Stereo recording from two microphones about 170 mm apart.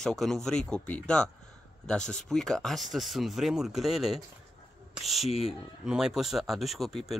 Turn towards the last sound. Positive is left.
turn(degrees=0)  # may be behind; listen again after turning